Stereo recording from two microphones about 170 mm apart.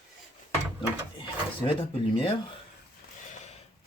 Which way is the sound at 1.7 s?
30° left (ahead or behind).